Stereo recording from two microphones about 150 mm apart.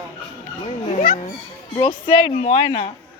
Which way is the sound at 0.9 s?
60° left (ahead or behind).